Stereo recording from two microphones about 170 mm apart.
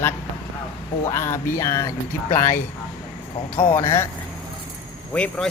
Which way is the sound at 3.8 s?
15° left (ahead or behind).